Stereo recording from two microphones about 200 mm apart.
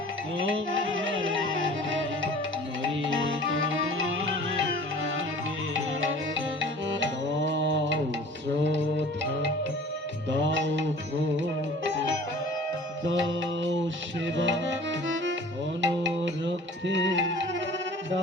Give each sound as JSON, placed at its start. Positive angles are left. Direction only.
{"t": 0.3, "sound": "music", "side_deg": -75}
{"t": 3.0, "sound": "music", "side_deg": -70}
{"t": 5.7, "sound": "music", "side_deg": -70}
{"t": 13.1, "sound": "music", "side_deg": -70}